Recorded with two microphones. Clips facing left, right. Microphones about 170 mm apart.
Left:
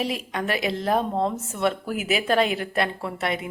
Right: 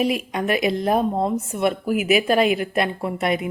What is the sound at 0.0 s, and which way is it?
A woman's voice, 15° right (ahead or behind).